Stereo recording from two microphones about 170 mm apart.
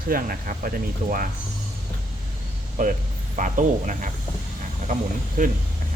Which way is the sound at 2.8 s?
50° right (ahead or behind).